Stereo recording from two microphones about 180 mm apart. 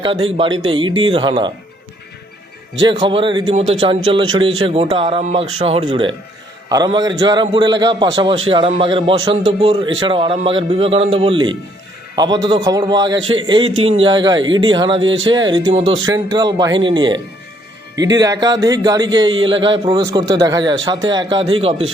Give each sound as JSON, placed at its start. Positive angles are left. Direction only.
{"t": 0.3, "sound": "a man's voice", "side_deg": -30}
{"t": 2.8, "sound": "a man's voice", "side_deg": -25}